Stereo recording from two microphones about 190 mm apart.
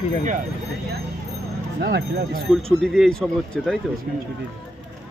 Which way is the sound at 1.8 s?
60° right (ahead or behind).